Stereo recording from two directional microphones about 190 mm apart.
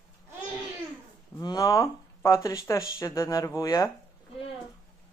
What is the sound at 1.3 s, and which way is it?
Speech, 20° left (ahead or behind).